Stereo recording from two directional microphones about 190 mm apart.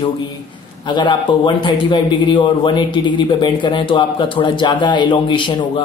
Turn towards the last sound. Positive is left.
turn(degrees=25)  # may be behind; listen again after turning